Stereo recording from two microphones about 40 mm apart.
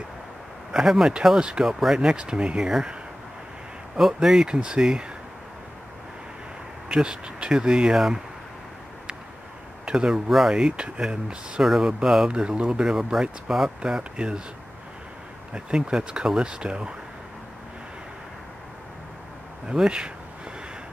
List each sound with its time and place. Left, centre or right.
0.7 s speech: centre
4.0 s speech: centre
4.5 s speech: right
6.9 s speech: right
9.8 s speech: centre
10.8 s speech: right
12.3 s speech: right
12.9 s speech: centre
15.5 s speech: right
19.7 s speech: right